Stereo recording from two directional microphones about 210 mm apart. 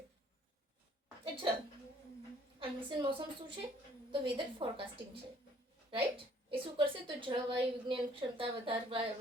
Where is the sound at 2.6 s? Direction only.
25° right (ahead or behind).